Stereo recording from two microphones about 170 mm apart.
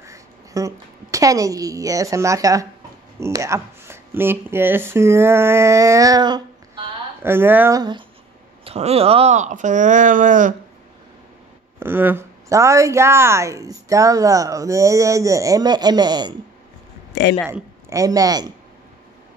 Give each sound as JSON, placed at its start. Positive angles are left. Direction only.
{"t": 0.0, "sound": "a sound", "side_deg": -20}
{"t": 3.2, "sound": "speech", "side_deg": -15}
{"t": 7.2, "sound": "speech", "side_deg": -15}
{"t": 8.6, "sound": "speech", "side_deg": -35}
{"t": 11.8, "sound": "a woman's voice", "side_deg": -10}
{"t": 17.1, "sound": "a man's voice", "side_deg": 85}
{"t": 17.5, "sound": "a man's voice", "side_deg": -15}